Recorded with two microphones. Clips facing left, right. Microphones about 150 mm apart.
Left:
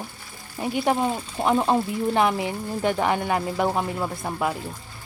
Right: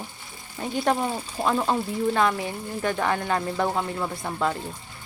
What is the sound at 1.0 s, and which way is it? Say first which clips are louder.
Speech: left 2 dB; 20° left (ahead or behind).